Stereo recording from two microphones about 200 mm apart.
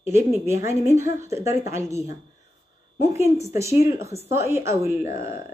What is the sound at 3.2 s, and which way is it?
Speech, 15° right (ahead or behind).